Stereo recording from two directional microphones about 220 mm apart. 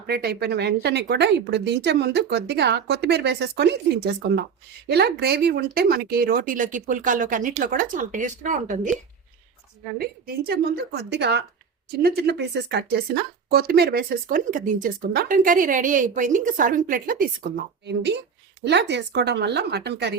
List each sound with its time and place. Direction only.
0.1 s speech: 45° right (ahead or behind)
10.0 s speech: 45° right (ahead or behind)